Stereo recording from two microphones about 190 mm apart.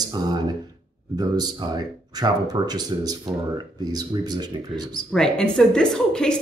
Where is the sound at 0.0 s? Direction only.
20° right (ahead or behind).